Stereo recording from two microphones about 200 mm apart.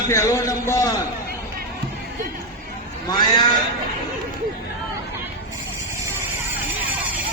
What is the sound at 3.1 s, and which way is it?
Speech, 20° left (ahead or behind).